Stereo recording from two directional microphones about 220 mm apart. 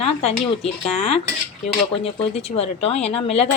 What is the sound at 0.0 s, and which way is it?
Speech, 30° left (ahead or behind).